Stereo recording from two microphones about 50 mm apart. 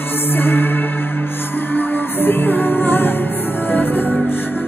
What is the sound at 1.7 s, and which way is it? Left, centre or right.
Music, left.